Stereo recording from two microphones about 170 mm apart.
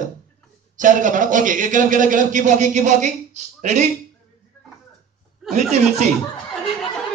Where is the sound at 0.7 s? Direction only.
50° right (ahead or behind).